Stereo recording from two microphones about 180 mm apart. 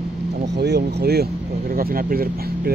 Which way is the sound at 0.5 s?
65° right (ahead or behind).